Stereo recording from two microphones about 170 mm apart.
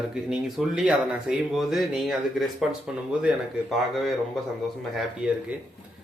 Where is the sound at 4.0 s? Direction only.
Centre (ahead or behind).